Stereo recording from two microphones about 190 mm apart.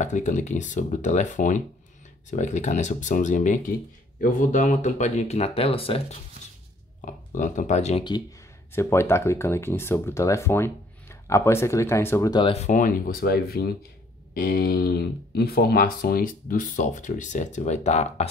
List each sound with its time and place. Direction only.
0.0 s speech: 40° left (ahead or behind)
7.1 s speech: 40° left (ahead or behind)
8.7 s speech: 15° left (ahead or behind); by 18.3 s 35° left (ahead or behind)